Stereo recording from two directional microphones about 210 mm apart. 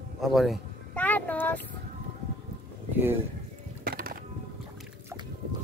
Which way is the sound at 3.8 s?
45° right (ahead or behind).